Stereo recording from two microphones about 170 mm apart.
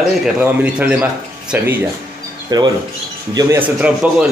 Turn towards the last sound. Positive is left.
turn(degrees=-5)  # may be behind; listen again after turning